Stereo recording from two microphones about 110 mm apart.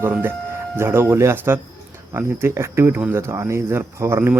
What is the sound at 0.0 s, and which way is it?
Speech, 20° right (ahead or behind).